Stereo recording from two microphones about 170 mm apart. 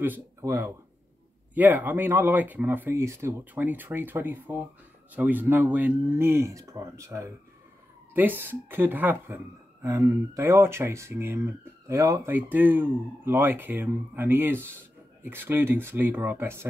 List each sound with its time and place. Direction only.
0.0 s speech: 15° right (ahead or behind)